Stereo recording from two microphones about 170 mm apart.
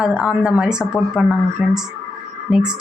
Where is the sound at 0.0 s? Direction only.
5° right (ahead or behind).